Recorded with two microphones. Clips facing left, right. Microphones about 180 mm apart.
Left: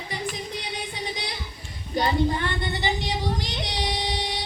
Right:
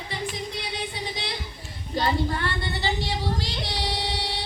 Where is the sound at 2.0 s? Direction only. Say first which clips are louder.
Left 2 dB; 20° left (ahead or behind).